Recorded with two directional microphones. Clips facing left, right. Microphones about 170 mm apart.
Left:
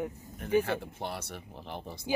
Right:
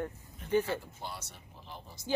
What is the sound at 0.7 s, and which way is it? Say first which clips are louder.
Speech: left 3 dB; 60° left (ahead or behind).